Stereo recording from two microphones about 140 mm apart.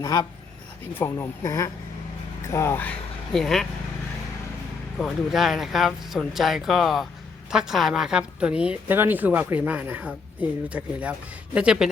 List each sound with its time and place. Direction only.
0.0 s speech: 20° left (ahead or behind)
3.3 s speech: centre (ahead or behind)
4.9 s a woman's voice: centre (ahead or behind)